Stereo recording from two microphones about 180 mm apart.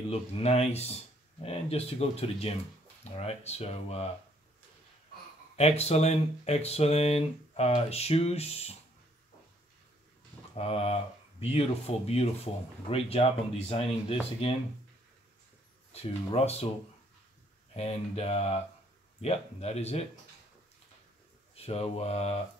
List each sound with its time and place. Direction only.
0.1 s speech: 35° left (ahead or behind)
5.6 s speech: 35° left (ahead or behind)
10.5 s speech: 35° left (ahead or behind)
15.9 s speech: 35° left (ahead or behind)
17.7 s speech: 35° left (ahead or behind)
21.5 s speech: 35° left (ahead or behind)